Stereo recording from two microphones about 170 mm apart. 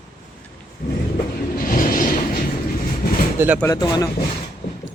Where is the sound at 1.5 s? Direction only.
55° left (ahead or behind).